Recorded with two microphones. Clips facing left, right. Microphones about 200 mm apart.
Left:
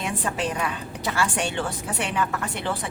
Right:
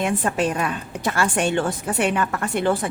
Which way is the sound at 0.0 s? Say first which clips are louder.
Right 6 dB; 50° right (ahead or behind).